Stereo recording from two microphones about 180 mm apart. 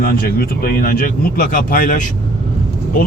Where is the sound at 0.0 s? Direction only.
55° left (ahead or behind).